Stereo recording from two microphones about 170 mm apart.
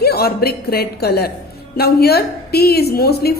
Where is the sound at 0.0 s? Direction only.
65° left (ahead or behind).